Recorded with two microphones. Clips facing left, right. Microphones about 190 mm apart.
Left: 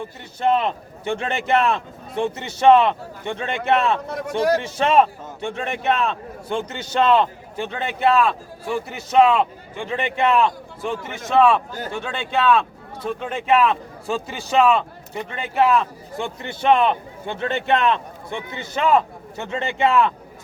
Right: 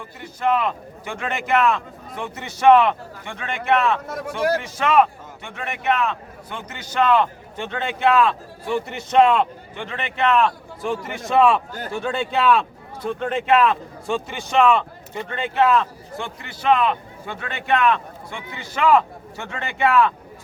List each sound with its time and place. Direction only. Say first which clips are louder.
0.0 s a man's voice: left 2 dB; 25° left (ahead or behind)
4.4 s speech: left 2 dB; 10° right (ahead or behind)
4.6 s a man's voice: left 1 dB; 25° left (ahead or behind)
7.5 s speech: left 1 dB; 10° left (ahead or behind)
10.8 s a man's voice: right 1 dB; centre (ahead or behind); by 20.1 s 20° left (ahead or behind)